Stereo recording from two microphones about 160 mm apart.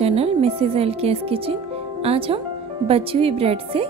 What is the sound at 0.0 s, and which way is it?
Speech, 40° right (ahead or behind).